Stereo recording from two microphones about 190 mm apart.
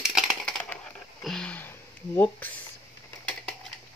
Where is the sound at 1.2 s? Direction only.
5° left (ahead or behind).